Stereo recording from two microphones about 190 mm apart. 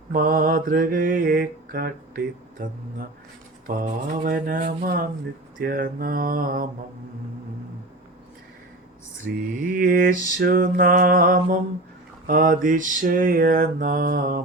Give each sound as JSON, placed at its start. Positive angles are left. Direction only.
{"t": 0.1, "sound": "mantra", "side_deg": -50}
{"t": 9.3, "sound": "mantra", "side_deg": -55}